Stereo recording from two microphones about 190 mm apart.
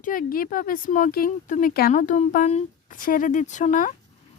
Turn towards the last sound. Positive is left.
turn(degrees=40)  # may be behind; listen again after turning